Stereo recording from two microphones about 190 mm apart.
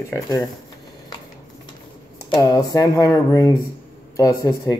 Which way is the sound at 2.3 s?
20° left (ahead or behind).